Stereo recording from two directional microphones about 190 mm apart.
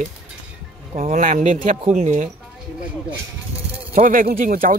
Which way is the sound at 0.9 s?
35° right (ahead or behind).